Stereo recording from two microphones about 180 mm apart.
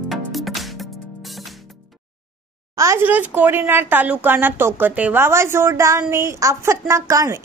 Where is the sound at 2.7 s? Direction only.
15° right (ahead or behind).